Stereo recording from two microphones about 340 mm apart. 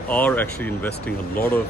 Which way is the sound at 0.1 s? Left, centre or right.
Centre.